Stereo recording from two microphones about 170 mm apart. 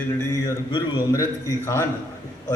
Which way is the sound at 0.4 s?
20° left (ahead or behind).